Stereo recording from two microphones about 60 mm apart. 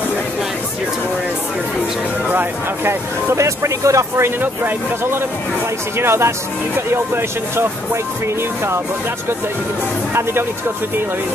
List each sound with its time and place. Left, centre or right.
2.2 s speech: right
3.3 s speech: right
4.4 s speech: right